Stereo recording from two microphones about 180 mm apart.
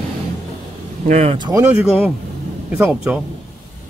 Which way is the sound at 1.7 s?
10° right (ahead or behind).